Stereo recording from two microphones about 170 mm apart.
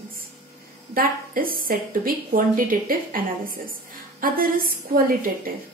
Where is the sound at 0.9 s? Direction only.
60° right (ahead or behind).